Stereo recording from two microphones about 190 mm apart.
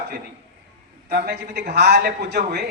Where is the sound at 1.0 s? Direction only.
55° right (ahead or behind).